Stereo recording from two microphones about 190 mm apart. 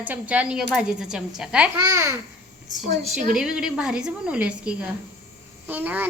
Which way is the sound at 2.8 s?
35° right (ahead or behind).